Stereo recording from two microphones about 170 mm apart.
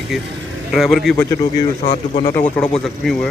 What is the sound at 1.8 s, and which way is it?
Speech, 45° left (ahead or behind).